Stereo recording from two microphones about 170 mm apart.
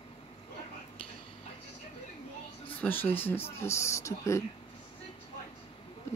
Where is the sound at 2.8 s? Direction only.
10° left (ahead or behind).